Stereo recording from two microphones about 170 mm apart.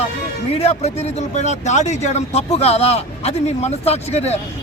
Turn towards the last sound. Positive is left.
turn(degrees=40)  # may be behind; listen again after turning